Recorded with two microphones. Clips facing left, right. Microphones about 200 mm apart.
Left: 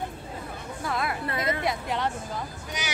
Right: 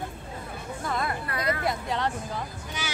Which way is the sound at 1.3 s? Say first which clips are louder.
Even; 20° left (ahead or behind).